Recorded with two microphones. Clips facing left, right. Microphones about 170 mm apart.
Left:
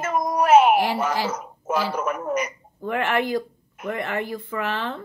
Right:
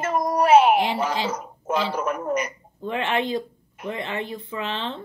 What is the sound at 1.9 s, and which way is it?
Speech, 5° left (ahead or behind).